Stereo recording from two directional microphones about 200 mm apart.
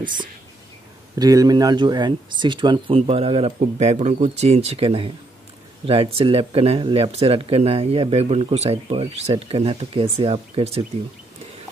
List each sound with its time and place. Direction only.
1.1 s speech: 15° right (ahead or behind)